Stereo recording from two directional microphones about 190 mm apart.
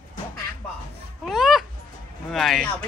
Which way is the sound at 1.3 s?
Centre (ahead or behind).